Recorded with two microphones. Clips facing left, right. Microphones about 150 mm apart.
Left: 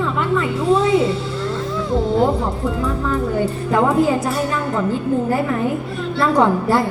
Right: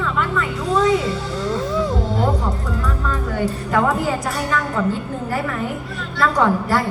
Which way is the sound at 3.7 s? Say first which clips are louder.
Left 4 dB; 25° left (ahead or behind).